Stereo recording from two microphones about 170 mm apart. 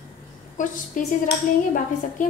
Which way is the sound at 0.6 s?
50° left (ahead or behind).